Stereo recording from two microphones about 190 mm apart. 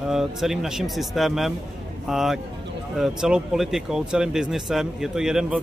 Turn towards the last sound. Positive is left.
turn(degrees=-5)  # may be behind; listen again after turning